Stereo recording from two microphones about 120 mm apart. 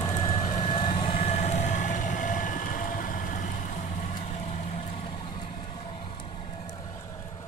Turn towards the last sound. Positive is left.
turn(degrees=45)  # may be behind; listen again after turning